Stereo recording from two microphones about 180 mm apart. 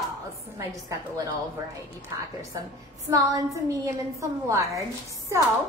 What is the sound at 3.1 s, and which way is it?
A woman's voice, 20° right (ahead or behind).